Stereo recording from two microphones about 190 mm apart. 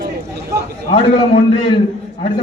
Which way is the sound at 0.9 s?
25° left (ahead or behind).